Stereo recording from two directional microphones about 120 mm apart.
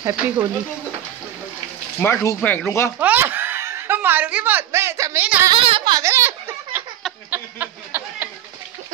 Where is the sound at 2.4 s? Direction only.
15° left (ahead or behind).